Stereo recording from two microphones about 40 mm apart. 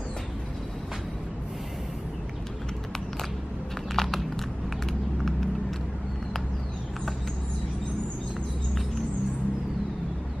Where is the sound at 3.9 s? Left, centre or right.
Centre.